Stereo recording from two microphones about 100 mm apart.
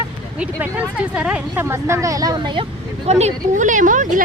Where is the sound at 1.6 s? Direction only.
25° right (ahead or behind).